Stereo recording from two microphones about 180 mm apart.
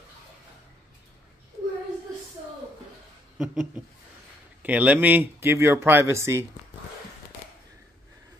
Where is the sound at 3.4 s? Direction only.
5° right (ahead or behind).